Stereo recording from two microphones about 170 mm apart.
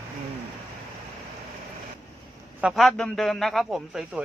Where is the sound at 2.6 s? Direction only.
Centre (ahead or behind).